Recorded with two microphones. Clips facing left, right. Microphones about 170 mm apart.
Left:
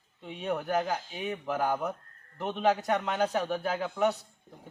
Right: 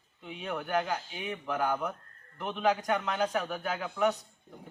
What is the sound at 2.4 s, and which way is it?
Speech, 30° left (ahead or behind).